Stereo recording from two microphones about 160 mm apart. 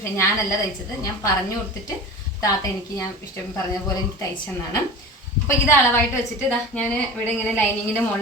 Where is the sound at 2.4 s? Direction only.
20° left (ahead or behind).